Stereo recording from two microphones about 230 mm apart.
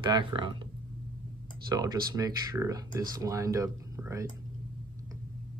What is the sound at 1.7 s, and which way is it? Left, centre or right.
Speech, centre.